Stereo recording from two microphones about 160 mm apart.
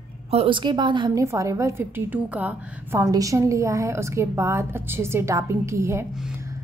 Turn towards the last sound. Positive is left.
turn(degrees=-20)  # may be behind; listen again after turning